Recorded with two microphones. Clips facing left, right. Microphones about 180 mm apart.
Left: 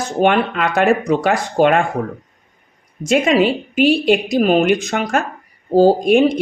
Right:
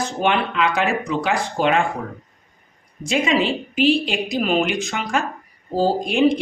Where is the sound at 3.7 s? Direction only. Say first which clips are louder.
Left 4 dB; 45° left (ahead or behind).